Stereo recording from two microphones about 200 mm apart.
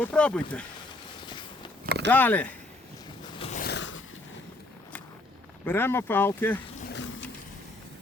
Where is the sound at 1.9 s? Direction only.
55° right (ahead or behind).